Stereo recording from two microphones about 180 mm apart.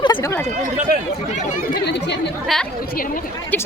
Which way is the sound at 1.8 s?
70° left (ahead or behind).